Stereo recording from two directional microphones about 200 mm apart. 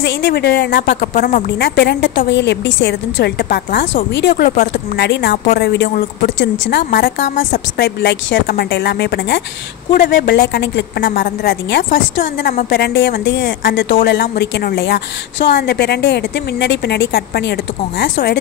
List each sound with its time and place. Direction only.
0.0 s a woman's voice: 55° left (ahead or behind)